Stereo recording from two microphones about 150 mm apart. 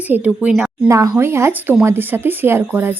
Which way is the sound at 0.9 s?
20° right (ahead or behind).